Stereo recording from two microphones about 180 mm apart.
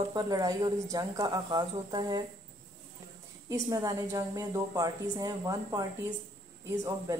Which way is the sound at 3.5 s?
20° right (ahead or behind).